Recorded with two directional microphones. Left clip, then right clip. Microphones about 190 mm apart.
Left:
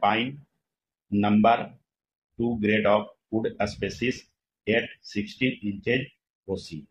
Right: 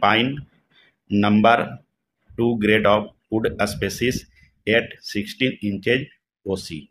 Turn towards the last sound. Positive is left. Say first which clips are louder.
# right 6 dB
turn(degrees=-40)  # may be behind; listen again after turning